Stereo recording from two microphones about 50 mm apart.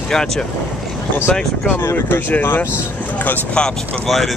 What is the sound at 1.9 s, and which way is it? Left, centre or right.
Speech, left.